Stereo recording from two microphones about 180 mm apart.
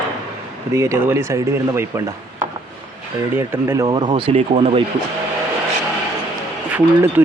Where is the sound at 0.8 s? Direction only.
15° right (ahead or behind).